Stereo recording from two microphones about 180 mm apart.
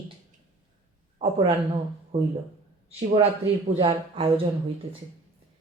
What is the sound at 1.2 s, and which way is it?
A man's voice, 30° right (ahead or behind).